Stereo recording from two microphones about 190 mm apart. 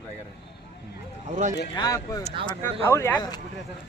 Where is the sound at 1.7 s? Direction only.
20° left (ahead or behind).